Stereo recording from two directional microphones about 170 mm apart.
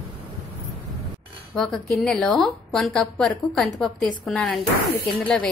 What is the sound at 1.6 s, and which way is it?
A woman's voice, centre (ahead or behind).